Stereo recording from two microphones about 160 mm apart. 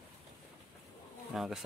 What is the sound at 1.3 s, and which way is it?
Speech, 5° right (ahead or behind).